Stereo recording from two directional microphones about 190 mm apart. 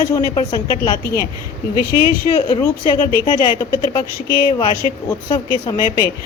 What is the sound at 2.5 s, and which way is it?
Speech, 25° left (ahead or behind).